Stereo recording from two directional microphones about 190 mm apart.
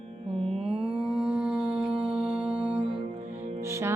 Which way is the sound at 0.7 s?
5° right (ahead or behind).